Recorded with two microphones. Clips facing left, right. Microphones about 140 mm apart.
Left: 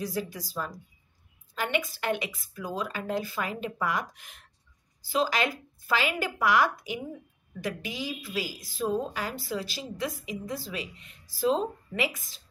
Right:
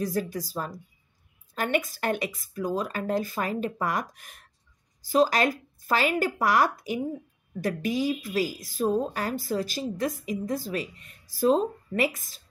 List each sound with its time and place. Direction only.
0.0 s speech: 50° right (ahead or behind)